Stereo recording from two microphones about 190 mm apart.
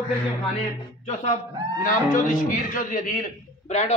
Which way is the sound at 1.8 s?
45° left (ahead or behind).